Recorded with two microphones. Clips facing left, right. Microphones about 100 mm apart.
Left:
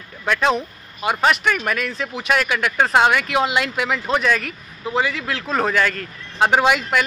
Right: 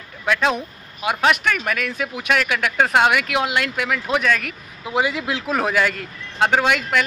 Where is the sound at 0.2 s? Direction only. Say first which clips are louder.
Left 1 dB; centre (ahead or behind).